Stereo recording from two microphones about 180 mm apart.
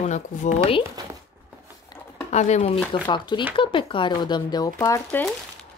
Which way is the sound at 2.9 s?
25° left (ahead or behind).